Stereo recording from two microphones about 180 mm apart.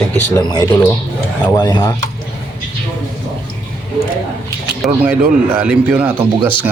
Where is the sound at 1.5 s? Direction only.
20° left (ahead or behind).